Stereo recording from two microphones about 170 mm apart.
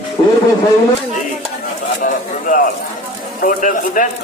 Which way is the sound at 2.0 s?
50° left (ahead or behind).